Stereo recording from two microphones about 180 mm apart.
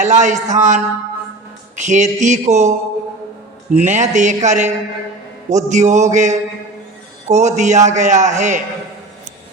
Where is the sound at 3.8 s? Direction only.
40° right (ahead or behind).